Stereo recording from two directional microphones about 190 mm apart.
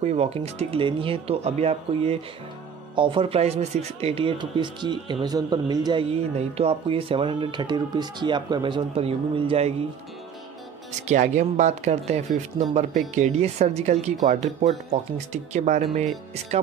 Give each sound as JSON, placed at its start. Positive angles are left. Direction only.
{"t": 0.0, "sound": "speech", "side_deg": -35}
{"t": 6.3, "sound": "speech", "side_deg": -35}
{"t": 11.1, "sound": "speech", "side_deg": -40}